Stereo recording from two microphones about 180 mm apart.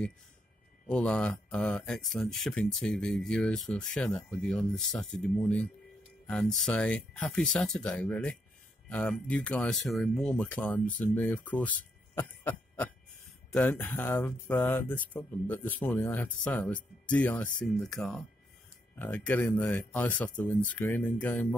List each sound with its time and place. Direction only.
0.8 s speech: 5° left (ahead or behind)
12.2 s a sound: 10° left (ahead or behind)
13.5 s speech: 10° left (ahead or behind)